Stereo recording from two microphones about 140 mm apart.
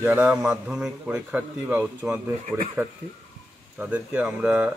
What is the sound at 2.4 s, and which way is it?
Speech, 55° right (ahead or behind).